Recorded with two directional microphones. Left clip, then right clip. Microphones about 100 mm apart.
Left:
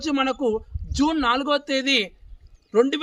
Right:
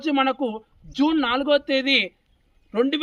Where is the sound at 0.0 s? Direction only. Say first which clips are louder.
Right 1 dB; 35° left (ahead or behind).